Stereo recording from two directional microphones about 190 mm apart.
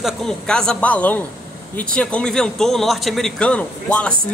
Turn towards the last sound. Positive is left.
turn(degrees=5)  # may be behind; listen again after turning